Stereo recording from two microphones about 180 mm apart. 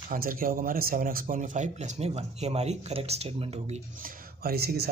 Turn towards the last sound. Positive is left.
turn(degrees=-60)  # may be behind; listen again after turning